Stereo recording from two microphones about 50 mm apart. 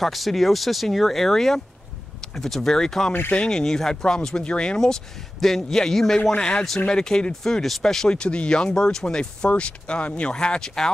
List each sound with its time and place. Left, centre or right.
0.0 s speech: centre
3.1 s speech: left
3.3 s speech: centre